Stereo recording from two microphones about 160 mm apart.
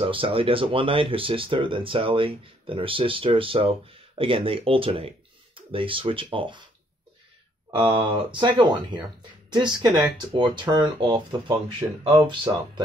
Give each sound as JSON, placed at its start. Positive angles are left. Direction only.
{"t": 0.0, "sound": "speech", "side_deg": -35}
{"t": 7.7, "sound": "speech", "side_deg": -35}